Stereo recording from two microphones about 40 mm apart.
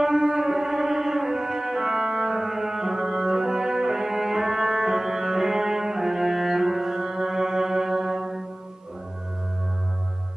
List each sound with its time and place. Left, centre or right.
0.0 s music: centre